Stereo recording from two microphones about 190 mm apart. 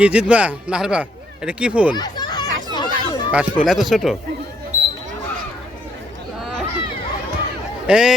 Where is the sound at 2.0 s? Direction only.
20° left (ahead or behind).